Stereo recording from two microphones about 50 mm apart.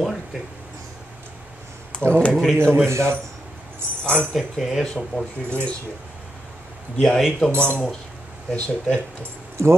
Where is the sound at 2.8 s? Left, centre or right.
Right.